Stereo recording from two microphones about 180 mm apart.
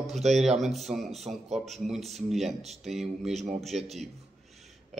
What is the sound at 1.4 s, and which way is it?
Speech, 40° right (ahead or behind).